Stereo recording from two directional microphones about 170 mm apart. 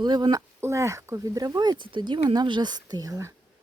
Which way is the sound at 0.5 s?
15° right (ahead or behind).